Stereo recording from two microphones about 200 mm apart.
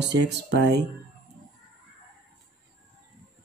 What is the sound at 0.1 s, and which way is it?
Speech, 60° right (ahead or behind).